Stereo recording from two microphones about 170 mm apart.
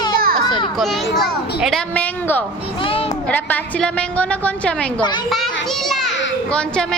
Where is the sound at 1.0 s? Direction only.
80° left.